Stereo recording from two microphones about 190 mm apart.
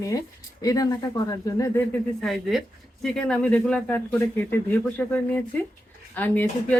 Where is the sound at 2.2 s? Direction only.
Centre (ahead or behind).